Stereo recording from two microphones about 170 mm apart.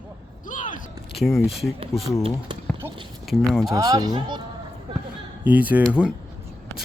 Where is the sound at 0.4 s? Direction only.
50° left (ahead or behind).